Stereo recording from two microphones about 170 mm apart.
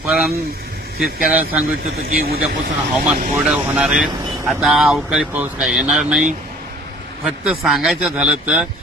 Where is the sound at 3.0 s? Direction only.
10° right (ahead or behind).